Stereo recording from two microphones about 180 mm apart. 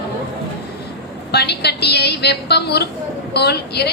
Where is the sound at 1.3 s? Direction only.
65° left (ahead or behind).